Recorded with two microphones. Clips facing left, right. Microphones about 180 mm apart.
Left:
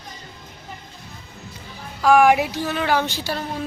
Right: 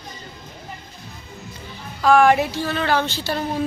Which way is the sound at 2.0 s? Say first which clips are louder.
Even; 10° left (ahead or behind).